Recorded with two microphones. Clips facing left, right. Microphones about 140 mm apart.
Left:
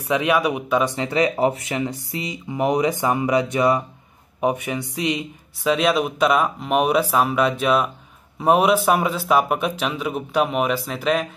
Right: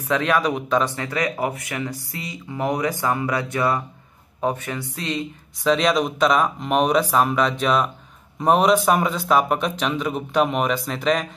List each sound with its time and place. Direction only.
0.0 s speech: 10° left (ahead or behind)
0.9 s speech: 25° left (ahead or behind); by 11.2 s 5° left (ahead or behind)